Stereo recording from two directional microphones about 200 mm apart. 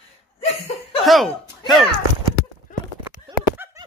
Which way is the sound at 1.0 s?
Centre (ahead or behind).